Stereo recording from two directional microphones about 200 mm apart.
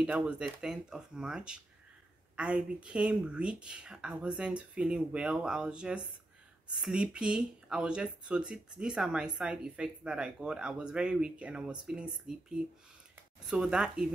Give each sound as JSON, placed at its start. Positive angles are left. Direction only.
{"t": 0.0, "sound": "speech", "side_deg": -5}